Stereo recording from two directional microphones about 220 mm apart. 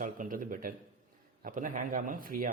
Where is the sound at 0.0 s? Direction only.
40° right (ahead or behind).